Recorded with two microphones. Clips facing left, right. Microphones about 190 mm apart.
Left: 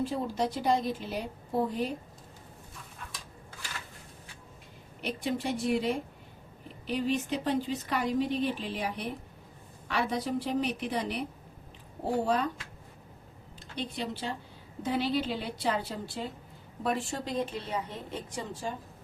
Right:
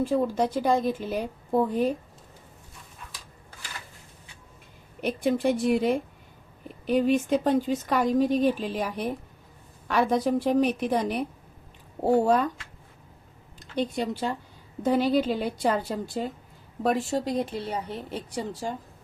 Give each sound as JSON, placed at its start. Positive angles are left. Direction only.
{"t": 0.0, "sound": "speech", "side_deg": -50}
{"t": 4.9, "sound": "speech", "side_deg": -50}
{"t": 12.2, "sound": "speech", "side_deg": -45}
{"t": 13.7, "sound": "speech", "side_deg": -45}